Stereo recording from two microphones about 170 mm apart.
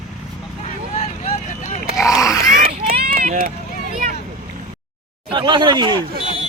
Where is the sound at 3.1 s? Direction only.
55° right (ahead or behind).